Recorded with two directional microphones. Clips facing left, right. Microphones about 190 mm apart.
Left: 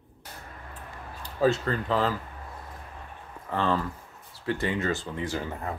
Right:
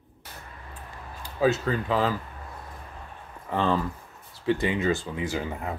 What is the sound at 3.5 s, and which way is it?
Speech, 15° right (ahead or behind).